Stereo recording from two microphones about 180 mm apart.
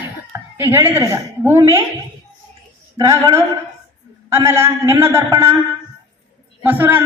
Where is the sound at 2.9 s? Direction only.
20° right (ahead or behind).